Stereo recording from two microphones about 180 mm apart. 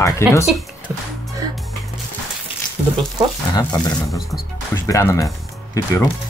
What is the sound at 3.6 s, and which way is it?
Speech, 20° left (ahead or behind).